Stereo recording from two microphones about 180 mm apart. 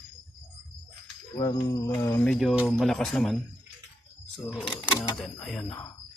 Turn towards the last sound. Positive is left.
turn(degrees=5)  # may be behind; listen again after turning